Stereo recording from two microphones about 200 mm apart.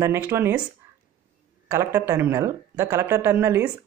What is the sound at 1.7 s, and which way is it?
Speech, 15° right (ahead or behind).